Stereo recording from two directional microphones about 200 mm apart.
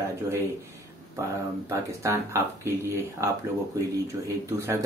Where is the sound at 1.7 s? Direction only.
15° right (ahead or behind).